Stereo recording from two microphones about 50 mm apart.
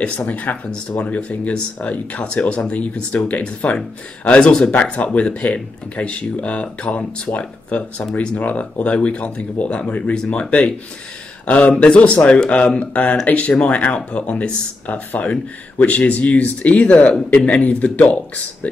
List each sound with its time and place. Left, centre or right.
0.0 s speech: left
11.4 s speech: left